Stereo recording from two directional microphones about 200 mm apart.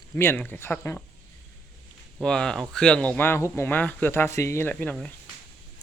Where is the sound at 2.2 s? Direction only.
5° left (ahead or behind).